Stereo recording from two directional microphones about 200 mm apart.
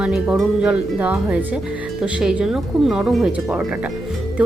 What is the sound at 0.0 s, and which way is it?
A woman's voice, centre (ahead or behind).